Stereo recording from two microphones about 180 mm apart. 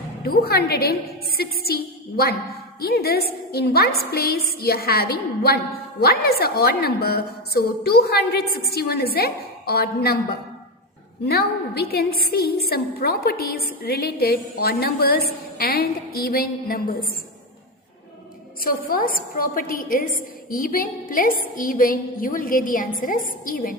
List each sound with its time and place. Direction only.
0.3 s a woman's voice: 60° left (ahead or behind)
11.3 s a woman's voice: 60° left (ahead or behind)
18.6 s a woman's voice: 55° left (ahead or behind)